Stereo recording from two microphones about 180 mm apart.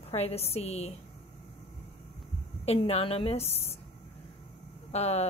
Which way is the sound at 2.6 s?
35° left (ahead or behind).